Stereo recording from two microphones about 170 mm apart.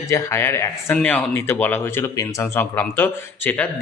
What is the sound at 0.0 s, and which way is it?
Speech, 15° left (ahead or behind).